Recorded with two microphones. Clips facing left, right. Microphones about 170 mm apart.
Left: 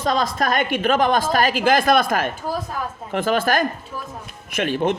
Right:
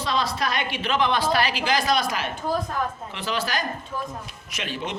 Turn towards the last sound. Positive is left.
turn(degrees=50)  # may be behind; listen again after turning